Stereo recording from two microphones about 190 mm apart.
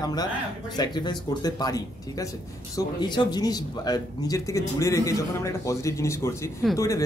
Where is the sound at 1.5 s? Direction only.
20° left (ahead or behind).